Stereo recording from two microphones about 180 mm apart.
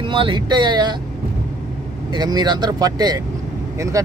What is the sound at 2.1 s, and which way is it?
Speech, 25° right (ahead or behind).